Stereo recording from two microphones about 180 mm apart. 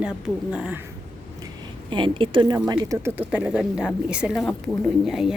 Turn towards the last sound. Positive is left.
turn(degrees=0)  # may be behind; listen again after turning